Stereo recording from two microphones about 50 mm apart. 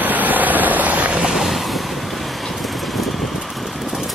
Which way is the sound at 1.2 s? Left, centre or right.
Centre.